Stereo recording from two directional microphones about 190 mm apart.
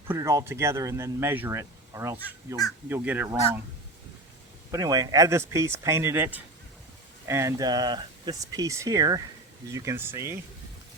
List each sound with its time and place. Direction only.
0.1 s speech: 15° right (ahead or behind)
4.7 s speech: 20° right (ahead or behind)